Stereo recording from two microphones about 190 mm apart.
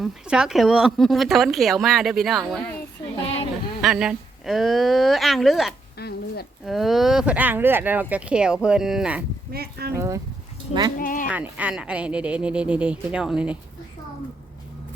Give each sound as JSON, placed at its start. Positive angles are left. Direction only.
{"t": 0.0, "sound": "a woman's voice", "side_deg": -5}
{"t": 3.8, "sound": "a woman's voice", "side_deg": 0}
{"t": 6.0, "sound": "a sound", "side_deg": 55}
{"t": 6.7, "sound": "a woman's voice", "side_deg": 0}
{"t": 9.5, "sound": "speech", "side_deg": -55}
{"t": 9.9, "sound": "speech", "side_deg": -15}
{"t": 10.9, "sound": "speech", "side_deg": 45}
{"t": 11.3, "sound": "a woman's voice", "side_deg": -5}